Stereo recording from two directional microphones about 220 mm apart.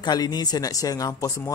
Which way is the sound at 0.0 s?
20° left (ahead or behind).